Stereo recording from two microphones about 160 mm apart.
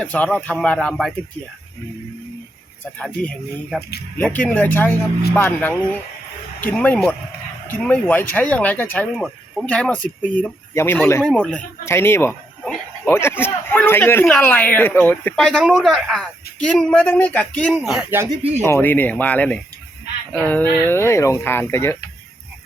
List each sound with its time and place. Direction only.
0.0 s a man's voice: 10° left (ahead or behind)
3.2 s a man's voice: 5° left (ahead or behind)
9.1 s speech: centre (ahead or behind)
11.9 s a man's voice: 15° left (ahead or behind)
17.7 s speech: 5° right (ahead or behind)
18.6 s a man's voice: 15° left (ahead or behind)